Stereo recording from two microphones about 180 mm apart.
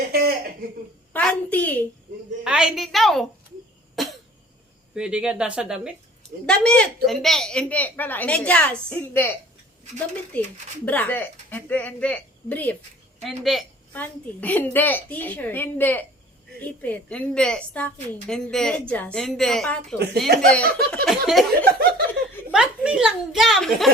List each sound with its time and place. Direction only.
0.1 s cough: 55° right (ahead or behind)
1.1 s a woman's voice: 10° left (ahead or behind)
2.4 s a woman's voice: 5° right (ahead or behind)
3.9 s cough: centre (ahead or behind)
4.9 s a woman's voice: 5° right (ahead or behind)
13.9 s a woman's voice: 10° left (ahead or behind)
22.5 s a woman's voice: 5° right (ahead or behind)